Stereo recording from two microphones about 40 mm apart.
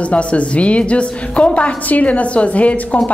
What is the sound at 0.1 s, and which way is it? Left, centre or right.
A woman's voice, left.